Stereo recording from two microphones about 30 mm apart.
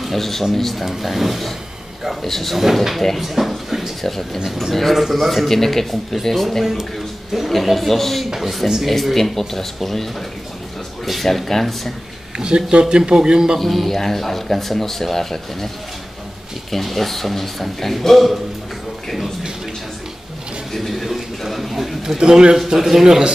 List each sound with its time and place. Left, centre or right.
0.1 s speech: centre
1.0 s speech: centre
2.2 s speech: centre
2.5 s speech: centre
4.0 s speech: centre
4.5 s speech: centre
11.1 s speech: centre
12.4 s a man's voice: right
13.6 s speech: centre
16.7 s speech: centre
20.7 s a sound: centre
22.2 s a man's voice: right
22.7 s a man's voice: centre